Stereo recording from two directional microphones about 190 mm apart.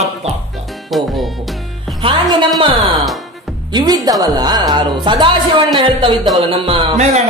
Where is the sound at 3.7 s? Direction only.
25° right (ahead or behind).